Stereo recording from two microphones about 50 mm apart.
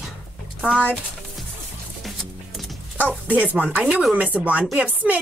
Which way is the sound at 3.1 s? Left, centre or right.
Right.